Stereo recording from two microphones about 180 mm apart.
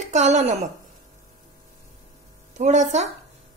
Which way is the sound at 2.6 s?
40° right (ahead or behind).